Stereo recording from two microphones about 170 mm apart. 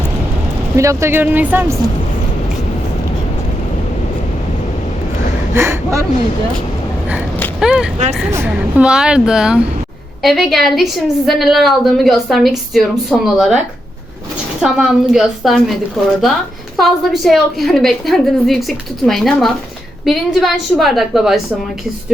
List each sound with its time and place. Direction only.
0.8 s speech: 15° right (ahead or behind)
5.5 s speech: 15° right (ahead or behind)
7.6 s a woman's voice: 5° right (ahead or behind)
14.6 s a woman's voice: 5° right (ahead or behind)
16.7 s a woman's voice: centre (ahead or behind)